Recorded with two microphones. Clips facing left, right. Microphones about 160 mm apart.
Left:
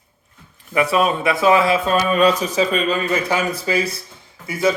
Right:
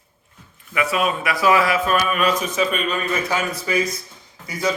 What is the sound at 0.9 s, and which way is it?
Speech, 30° left (ahead or behind).